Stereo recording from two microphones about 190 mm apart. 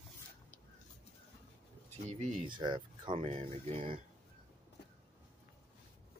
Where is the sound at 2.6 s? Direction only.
25° right (ahead or behind).